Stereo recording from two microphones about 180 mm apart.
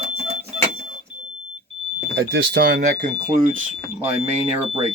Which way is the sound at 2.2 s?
90° right.